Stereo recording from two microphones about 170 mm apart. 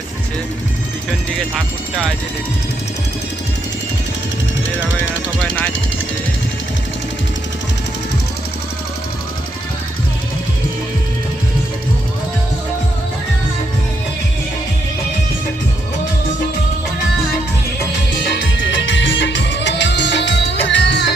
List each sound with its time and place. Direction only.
1.5 s speech: centre (ahead or behind)
18.3 s music: 90° left